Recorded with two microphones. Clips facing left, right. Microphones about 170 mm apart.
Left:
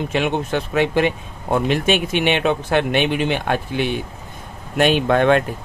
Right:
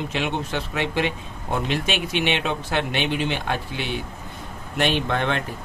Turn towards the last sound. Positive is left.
turn(degrees=50)  # may be behind; listen again after turning